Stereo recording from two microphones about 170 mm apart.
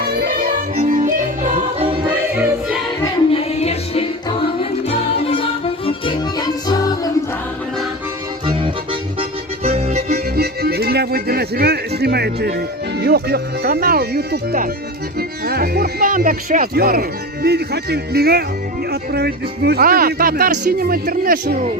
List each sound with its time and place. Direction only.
0.0 s music: 65° right (ahead or behind); by 2.0 s 40° right (ahead or behind)
2.3 s music: 10° right (ahead or behind)
3.3 s music: 35° left (ahead or behind)
6.7 s music: 20° left (ahead or behind)
8.4 s music: 30° right (ahead or behind)
9.6 s accordion: 35° right (ahead or behind)
10.1 s speech: 65° right (ahead or behind)